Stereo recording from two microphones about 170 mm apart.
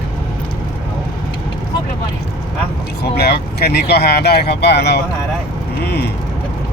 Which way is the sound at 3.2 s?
70° left (ahead or behind).